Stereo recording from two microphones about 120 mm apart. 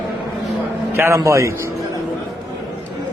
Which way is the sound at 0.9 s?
20° right (ahead or behind).